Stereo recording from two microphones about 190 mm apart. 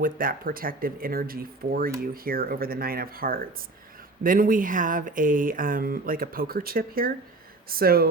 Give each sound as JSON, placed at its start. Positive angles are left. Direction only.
{"t": 0.0, "sound": "speech", "side_deg": -50}